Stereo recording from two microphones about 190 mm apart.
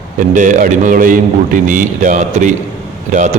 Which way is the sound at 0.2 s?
45° right (ahead or behind).